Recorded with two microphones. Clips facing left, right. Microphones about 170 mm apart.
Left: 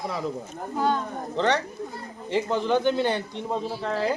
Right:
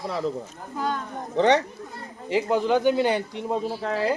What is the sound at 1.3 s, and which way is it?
A man's voice, 15° right (ahead or behind).